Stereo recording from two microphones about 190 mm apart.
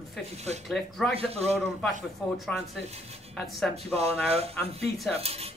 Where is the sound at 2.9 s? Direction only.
35° right (ahead or behind).